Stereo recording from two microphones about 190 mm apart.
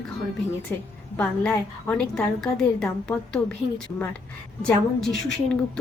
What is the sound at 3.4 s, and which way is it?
Speech, 15° left (ahead or behind).